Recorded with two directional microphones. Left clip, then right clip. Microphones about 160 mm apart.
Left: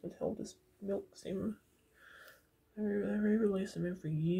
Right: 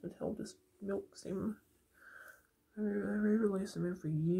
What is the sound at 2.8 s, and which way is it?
Speech, 30° left (ahead or behind).